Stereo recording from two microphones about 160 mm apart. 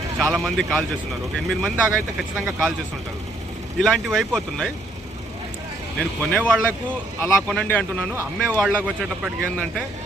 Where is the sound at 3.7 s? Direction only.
5° left (ahead or behind).